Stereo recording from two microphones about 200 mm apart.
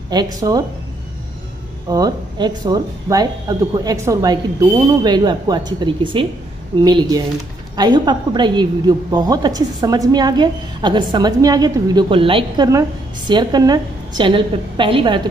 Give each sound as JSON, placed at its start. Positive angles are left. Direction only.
{"t": 0.1, "sound": "a woman's voice", "side_deg": -20}
{"t": 1.9, "sound": "a woman's voice", "side_deg": -20}